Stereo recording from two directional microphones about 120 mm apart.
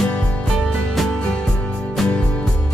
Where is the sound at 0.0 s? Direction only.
10° left (ahead or behind).